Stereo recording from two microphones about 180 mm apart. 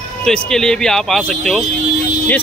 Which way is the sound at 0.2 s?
5° left (ahead or behind).